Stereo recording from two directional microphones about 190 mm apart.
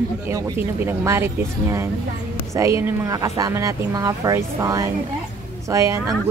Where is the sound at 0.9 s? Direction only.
15° right (ahead or behind).